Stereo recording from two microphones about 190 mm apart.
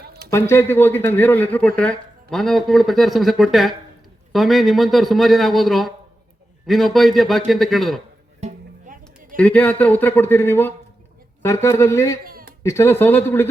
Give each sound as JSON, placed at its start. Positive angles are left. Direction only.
{"t": 0.0, "sound": "a sound", "side_deg": -55}
{"t": 0.3, "sound": "speech", "side_deg": 15}
{"t": 8.4, "sound": "music", "side_deg": -40}
{"t": 9.4, "sound": "speech", "side_deg": 5}
{"t": 12.2, "sound": "a sound", "side_deg": -50}
{"t": 12.6, "sound": "speech", "side_deg": 15}